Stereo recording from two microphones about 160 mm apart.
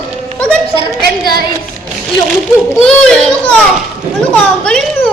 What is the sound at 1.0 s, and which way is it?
Speech, 75° right (ahead or behind).